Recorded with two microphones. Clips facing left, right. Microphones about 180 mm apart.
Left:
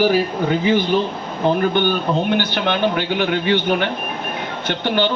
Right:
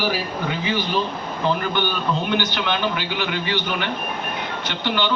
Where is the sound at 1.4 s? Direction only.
50° left (ahead or behind).